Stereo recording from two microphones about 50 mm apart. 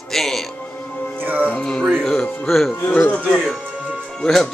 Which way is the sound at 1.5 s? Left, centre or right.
Centre.